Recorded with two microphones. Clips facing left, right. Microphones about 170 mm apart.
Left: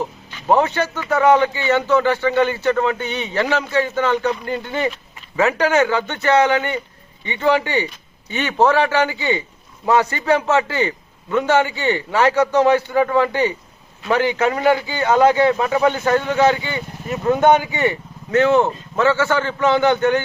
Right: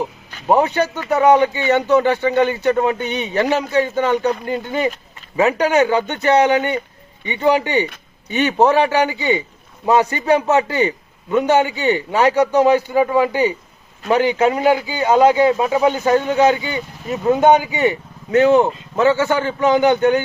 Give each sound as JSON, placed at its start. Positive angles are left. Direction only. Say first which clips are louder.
{"t": 0.4, "sound": "speech", "louder": "right 1 dB", "side_deg": -15}